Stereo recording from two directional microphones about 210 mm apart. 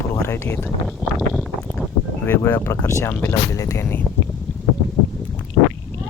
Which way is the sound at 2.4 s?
10° left (ahead or behind).